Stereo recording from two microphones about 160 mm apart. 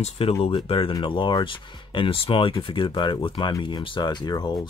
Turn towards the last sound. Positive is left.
turn(degrees=25)  # may be behind; listen again after turning